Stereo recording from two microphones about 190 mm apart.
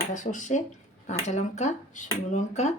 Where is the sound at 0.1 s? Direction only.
40° left (ahead or behind).